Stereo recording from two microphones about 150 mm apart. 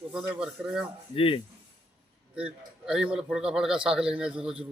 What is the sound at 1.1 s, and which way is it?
Speech, 35° left (ahead or behind).